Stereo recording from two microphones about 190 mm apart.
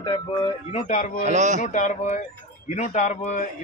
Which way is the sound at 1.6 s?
40° left (ahead or behind).